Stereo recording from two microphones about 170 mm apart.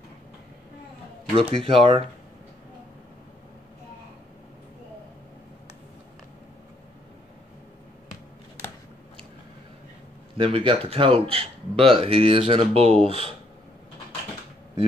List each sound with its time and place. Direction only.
1.3 s a man's voice: 30° right (ahead or behind)
10.3 s a man's voice: 30° right (ahead or behind)